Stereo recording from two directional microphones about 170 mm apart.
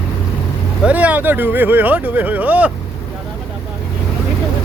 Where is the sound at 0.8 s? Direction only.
10° right (ahead or behind).